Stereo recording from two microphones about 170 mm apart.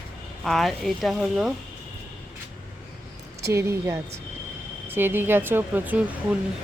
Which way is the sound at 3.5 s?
15° right (ahead or behind).